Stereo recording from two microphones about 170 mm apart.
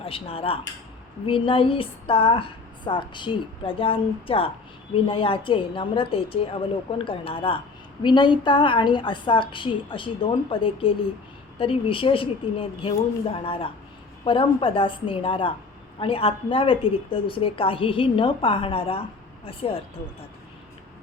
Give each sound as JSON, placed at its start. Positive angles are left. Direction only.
{"t": 0.0, "sound": "a woman's voice", "side_deg": 35}